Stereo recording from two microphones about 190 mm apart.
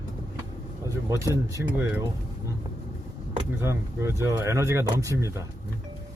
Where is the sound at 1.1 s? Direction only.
15° right (ahead or behind).